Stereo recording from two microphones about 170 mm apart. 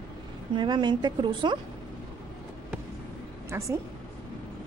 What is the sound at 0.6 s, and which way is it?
A woman's voice, 25° right (ahead or behind).